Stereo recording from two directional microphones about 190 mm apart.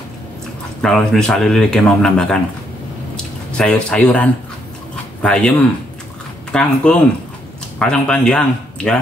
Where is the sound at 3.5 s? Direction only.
5° left (ahead or behind).